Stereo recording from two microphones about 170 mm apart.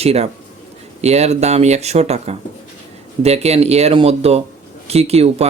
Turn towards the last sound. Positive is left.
turn(degrees=-35)  # may be behind; listen again after turning